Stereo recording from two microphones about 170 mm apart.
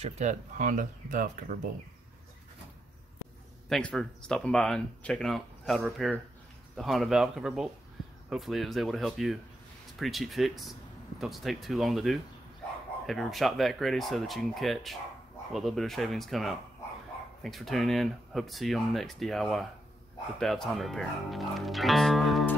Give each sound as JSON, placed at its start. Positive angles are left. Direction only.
{"t": 0.0, "sound": "speech", "side_deg": -40}
{"t": 3.6, "sound": "speech", "side_deg": 5}